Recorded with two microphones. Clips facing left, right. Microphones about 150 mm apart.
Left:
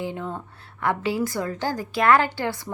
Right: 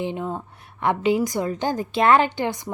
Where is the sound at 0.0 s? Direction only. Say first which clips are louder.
Right 3 dB; 20° right (ahead or behind).